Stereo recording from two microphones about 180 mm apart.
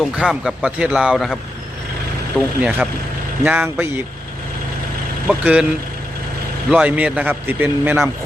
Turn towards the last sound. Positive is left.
turn(degrees=-10)  # may be behind; listen again after turning